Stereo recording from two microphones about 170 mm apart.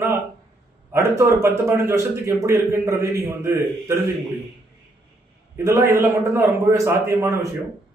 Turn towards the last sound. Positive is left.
turn(degrees=-20)  # may be behind; listen again after turning